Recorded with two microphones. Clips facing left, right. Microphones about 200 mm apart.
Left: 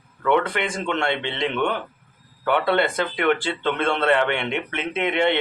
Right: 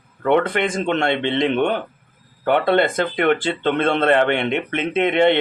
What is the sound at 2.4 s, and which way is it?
A man's voice, 50° right (ahead or behind).